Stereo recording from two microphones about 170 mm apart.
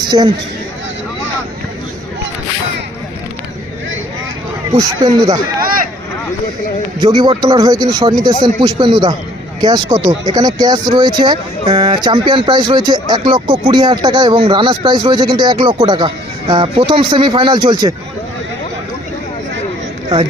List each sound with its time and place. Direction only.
0.0 s speech: 25° right (ahead or behind)
4.7 s speech: 20° right (ahead or behind)
7.0 s speech: 25° right (ahead or behind)